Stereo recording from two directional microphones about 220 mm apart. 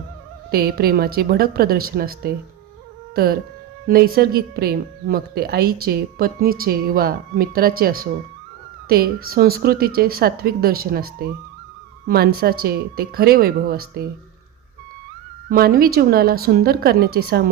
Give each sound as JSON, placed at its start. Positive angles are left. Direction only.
{"t": 0.5, "sound": "a woman's voice", "side_deg": -45}
{"t": 3.8, "sound": "a woman's voice", "side_deg": -45}
{"t": 15.4, "sound": "a woman's voice", "side_deg": -45}